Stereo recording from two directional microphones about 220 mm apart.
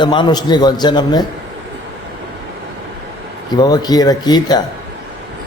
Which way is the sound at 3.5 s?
15° left (ahead or behind).